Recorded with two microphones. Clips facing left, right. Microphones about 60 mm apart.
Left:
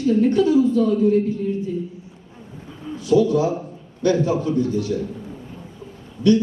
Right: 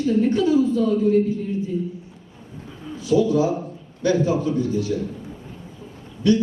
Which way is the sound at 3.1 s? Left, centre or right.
Right.